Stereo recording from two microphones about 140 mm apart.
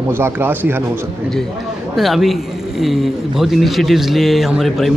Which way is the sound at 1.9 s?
Centre (ahead or behind).